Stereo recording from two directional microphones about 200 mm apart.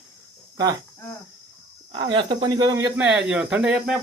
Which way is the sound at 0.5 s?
20° right (ahead or behind).